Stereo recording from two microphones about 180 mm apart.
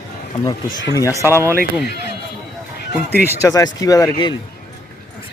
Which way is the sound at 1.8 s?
65° left (ahead or behind).